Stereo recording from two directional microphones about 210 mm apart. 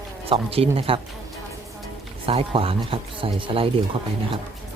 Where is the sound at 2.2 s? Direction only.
25° right (ahead or behind).